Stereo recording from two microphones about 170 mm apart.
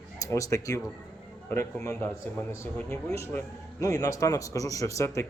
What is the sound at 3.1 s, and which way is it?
A man's voice, 15° left (ahead or behind).